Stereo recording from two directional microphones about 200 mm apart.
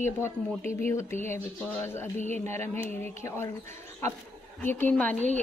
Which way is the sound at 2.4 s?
10° left (ahead or behind).